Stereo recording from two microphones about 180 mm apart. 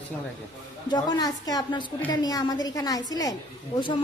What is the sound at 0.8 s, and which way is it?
A woman's voice, 20° left (ahead or behind).